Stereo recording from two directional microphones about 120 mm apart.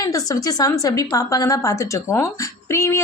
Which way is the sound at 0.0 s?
30° left (ahead or behind).